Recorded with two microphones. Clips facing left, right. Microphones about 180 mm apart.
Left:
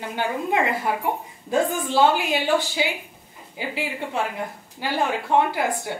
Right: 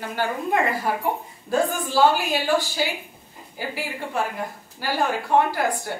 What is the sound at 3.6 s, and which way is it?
Speech, 20° left (ahead or behind).